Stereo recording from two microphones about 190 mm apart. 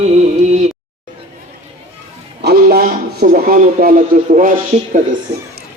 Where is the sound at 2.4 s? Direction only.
55° right (ahead or behind).